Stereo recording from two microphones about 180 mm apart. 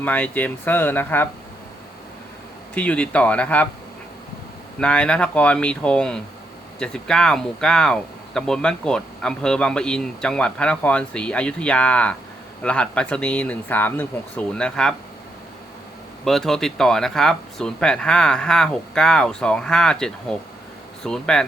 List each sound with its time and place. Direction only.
0.0 s speech: 10° left (ahead or behind)
2.7 s speech: 5° left (ahead or behind)
4.8 s speech: 5° left (ahead or behind)
16.2 s speech: centre (ahead or behind)